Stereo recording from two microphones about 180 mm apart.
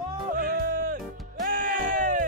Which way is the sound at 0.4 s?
50° right (ahead or behind).